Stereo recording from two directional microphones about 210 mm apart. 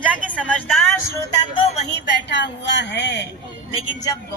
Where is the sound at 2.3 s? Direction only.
55° left (ahead or behind).